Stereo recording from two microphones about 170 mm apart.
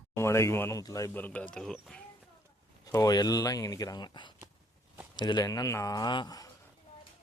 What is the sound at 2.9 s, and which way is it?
Speech, 25° left (ahead or behind).